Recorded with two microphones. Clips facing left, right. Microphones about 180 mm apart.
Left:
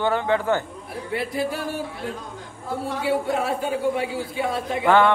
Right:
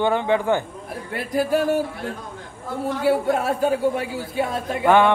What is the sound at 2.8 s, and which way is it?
A man's voice, 45° right (ahead or behind).